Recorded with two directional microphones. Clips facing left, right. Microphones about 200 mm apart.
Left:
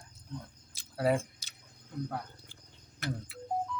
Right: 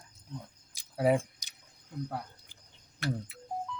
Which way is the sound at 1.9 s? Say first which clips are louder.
Left 1 dB; 10° right (ahead or behind).